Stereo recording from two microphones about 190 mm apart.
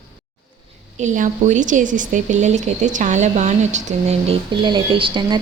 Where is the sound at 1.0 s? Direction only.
40° right (ahead or behind).